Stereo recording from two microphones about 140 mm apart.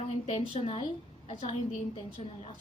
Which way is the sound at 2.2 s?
50° left (ahead or behind).